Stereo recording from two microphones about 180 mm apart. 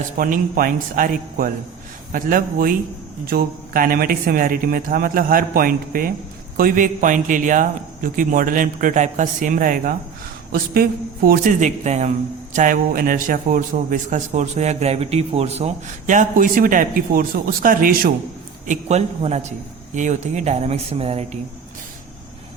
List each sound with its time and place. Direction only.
0.2 s a man's voice: 50° right (ahead or behind)
11.3 s a man's voice: 45° right (ahead or behind)
18.6 s speech: 40° right (ahead or behind)